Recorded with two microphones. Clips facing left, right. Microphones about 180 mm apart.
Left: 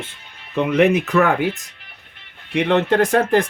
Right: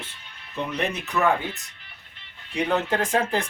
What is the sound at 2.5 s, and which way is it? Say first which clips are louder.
Speech: left 7 dB; 85° left.